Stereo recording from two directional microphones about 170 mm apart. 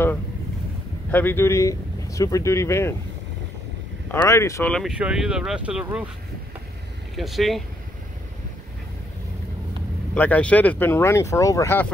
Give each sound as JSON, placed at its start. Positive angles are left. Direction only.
{"t": 1.1, "sound": "speech", "side_deg": 15}
{"t": 4.1, "sound": "speech", "side_deg": 15}
{"t": 4.7, "sound": "speech", "side_deg": -5}
{"t": 7.2, "sound": "speech", "side_deg": 0}
{"t": 10.1, "sound": "speech", "side_deg": 10}